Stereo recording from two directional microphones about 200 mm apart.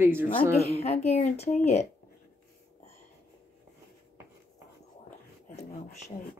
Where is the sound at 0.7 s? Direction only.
30° left (ahead or behind).